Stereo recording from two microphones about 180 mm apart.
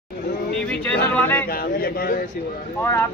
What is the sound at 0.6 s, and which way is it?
Yodeling, 5° left (ahead or behind).